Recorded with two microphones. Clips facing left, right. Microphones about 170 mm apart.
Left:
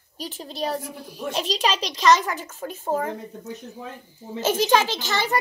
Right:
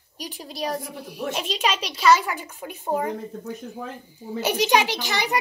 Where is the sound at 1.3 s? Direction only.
35° left (ahead or behind).